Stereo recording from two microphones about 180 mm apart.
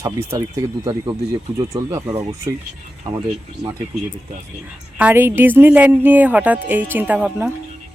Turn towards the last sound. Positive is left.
turn(degrees=-10)  # may be behind; listen again after turning